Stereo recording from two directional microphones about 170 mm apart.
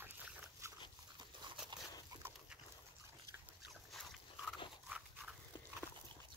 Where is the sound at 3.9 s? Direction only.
Centre (ahead or behind).